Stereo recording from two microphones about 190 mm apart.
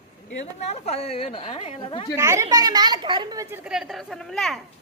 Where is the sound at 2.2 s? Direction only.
15° right (ahead or behind).